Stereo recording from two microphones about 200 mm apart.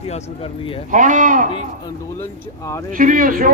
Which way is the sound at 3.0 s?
45° right (ahead or behind).